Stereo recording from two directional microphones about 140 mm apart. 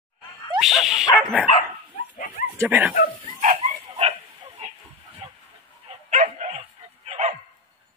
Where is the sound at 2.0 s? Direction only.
75° left (ahead or behind).